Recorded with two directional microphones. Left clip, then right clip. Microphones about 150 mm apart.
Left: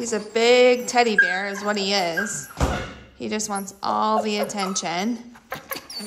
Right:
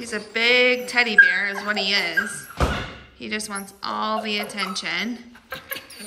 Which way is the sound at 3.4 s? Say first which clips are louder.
Left 4 dB; 35° left (ahead or behind).